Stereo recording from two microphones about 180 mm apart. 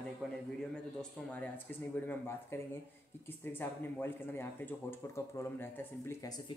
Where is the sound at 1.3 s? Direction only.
10° left (ahead or behind).